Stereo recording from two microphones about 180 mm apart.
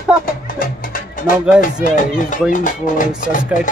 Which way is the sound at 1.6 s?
45° left (ahead or behind).